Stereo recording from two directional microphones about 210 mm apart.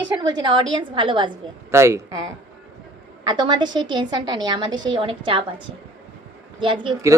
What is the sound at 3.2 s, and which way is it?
A woman's voice, 20° right (ahead or behind).